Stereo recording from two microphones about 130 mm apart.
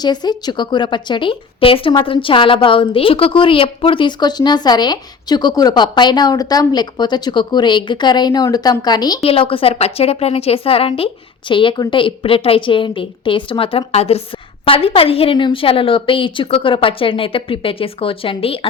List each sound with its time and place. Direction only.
0.0 s a woman's voice: 30° left (ahead or behind)
9.2 s a woman's voice: 45° left (ahead or behind)